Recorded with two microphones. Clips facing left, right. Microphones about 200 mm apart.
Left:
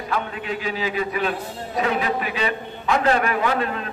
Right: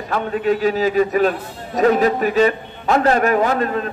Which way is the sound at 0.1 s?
45° right (ahead or behind).